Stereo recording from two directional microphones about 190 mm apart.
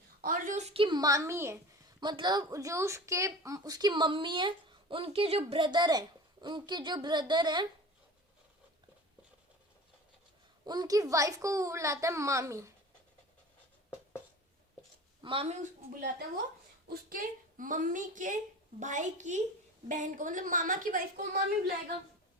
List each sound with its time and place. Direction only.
0.2 s a woman's voice: 45° right (ahead or behind); by 7.7 s 25° right (ahead or behind)
10.7 s a child's voice: 20° right (ahead or behind)
15.2 s speech: 30° right (ahead or behind)
16.9 s a woman's voice: 50° right (ahead or behind)